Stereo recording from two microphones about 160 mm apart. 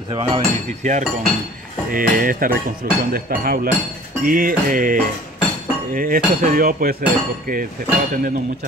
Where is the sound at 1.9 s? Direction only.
60° right (ahead or behind).